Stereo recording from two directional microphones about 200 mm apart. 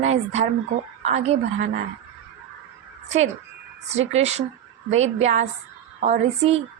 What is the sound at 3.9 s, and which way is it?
Speech, 35° right (ahead or behind).